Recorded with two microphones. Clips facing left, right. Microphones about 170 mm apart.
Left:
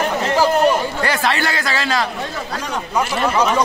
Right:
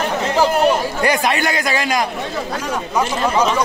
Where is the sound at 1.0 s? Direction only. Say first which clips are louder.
Right 2 dB; 15° right (ahead or behind).